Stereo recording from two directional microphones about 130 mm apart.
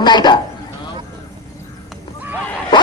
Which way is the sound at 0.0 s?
35° left (ahead or behind).